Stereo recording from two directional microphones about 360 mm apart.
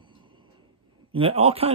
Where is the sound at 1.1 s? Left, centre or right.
Centre.